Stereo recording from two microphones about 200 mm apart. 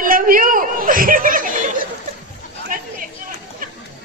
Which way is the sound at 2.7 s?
45° right (ahead or behind).